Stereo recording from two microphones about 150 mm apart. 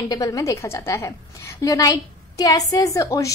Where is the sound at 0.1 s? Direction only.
25° left (ahead or behind).